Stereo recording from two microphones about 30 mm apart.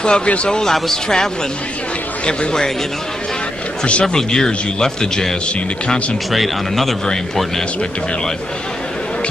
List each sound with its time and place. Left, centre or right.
0.0 s speech: left
4.0 s speech: centre
6.3 s speech: centre